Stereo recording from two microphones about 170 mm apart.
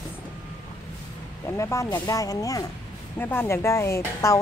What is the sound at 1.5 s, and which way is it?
Speech, 15° left (ahead or behind).